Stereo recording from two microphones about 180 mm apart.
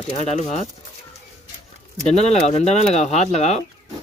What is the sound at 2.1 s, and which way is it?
Speech, 35° left (ahead or behind).